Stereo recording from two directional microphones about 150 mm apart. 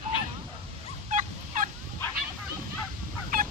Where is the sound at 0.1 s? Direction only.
35° left (ahead or behind).